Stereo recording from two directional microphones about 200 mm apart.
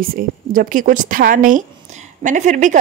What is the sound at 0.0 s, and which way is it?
A woman's voice, 45° right (ahead or behind).